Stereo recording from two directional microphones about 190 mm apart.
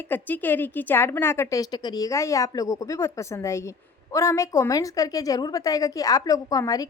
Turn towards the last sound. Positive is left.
turn(degrees=20)  # may be behind; listen again after turning